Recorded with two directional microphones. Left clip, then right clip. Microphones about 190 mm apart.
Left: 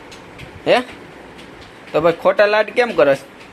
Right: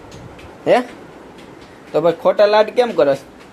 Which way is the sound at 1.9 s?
10° right (ahead or behind).